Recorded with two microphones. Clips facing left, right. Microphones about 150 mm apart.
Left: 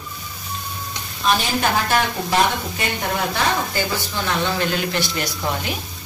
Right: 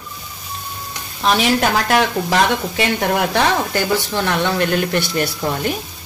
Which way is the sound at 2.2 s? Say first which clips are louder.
Right 3 dB; 90° right.